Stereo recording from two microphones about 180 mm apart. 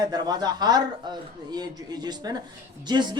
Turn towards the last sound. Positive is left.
turn(degrees=-25)  # may be behind; listen again after turning